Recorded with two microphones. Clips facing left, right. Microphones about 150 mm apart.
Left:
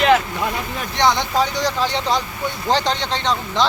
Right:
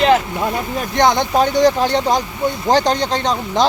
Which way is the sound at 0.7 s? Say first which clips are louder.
Right 4 dB; 50° right (ahead or behind).